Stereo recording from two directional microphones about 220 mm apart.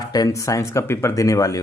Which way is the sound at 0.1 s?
15° left (ahead or behind).